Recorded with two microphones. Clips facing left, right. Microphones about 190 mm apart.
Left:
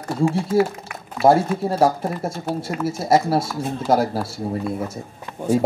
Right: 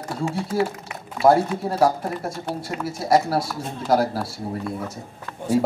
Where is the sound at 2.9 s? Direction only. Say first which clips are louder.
Left 1 dB; 25° left (ahead or behind).